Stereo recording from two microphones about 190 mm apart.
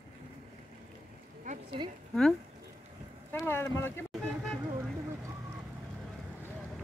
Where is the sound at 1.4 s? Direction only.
40° right (ahead or behind).